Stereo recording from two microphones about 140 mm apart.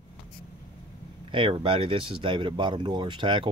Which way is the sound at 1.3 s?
40° right (ahead or behind).